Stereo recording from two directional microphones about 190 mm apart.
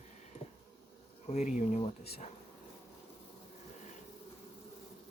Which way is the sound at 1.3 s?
40° left (ahead or behind).